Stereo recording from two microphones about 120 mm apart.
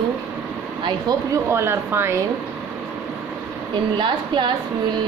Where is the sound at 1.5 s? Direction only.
20° right (ahead or behind).